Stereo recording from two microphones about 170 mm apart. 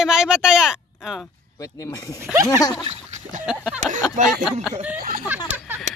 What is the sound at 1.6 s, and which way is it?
Speech, 20° left (ahead or behind).